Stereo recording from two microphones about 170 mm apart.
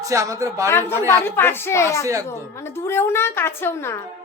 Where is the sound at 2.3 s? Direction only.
15° left (ahead or behind).